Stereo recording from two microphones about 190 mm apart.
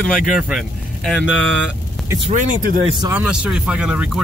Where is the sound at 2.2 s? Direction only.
45° right (ahead or behind).